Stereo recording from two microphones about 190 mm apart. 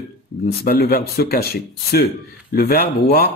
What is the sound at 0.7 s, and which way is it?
Speech, 55° left (ahead or behind).